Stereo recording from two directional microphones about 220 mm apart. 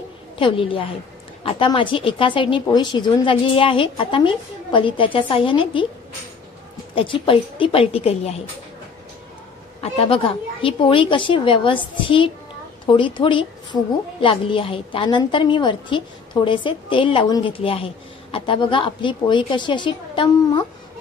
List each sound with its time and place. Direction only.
0.4 s a woman's voice: 25° left (ahead or behind)
7.0 s a woman's voice: 25° left (ahead or behind)
9.8 s a woman's voice: 25° left (ahead or behind)